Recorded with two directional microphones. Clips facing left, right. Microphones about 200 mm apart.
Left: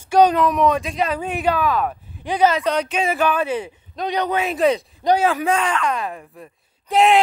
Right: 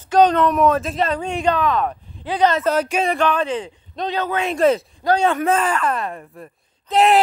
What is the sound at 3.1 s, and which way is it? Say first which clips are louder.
Speech: left 2 dB; 10° left (ahead or behind).